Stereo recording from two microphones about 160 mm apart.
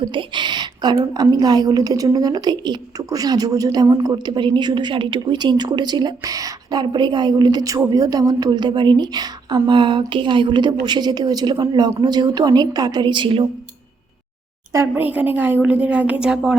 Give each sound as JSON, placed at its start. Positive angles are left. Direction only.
{"t": 0.1, "sound": "a woman's voice", "side_deg": -30}
{"t": 14.7, "sound": "a woman's voice", "side_deg": -15}